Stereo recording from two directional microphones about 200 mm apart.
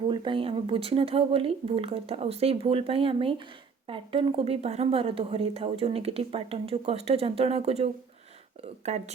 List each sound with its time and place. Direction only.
0.1 s a woman's voice: 25° right (ahead or behind)